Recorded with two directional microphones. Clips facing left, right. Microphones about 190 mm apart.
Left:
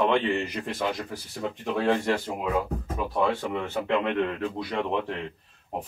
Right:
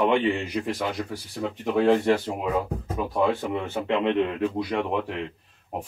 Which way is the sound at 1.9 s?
20° right (ahead or behind).